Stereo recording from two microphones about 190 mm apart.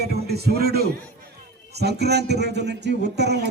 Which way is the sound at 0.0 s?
55° right (ahead or behind).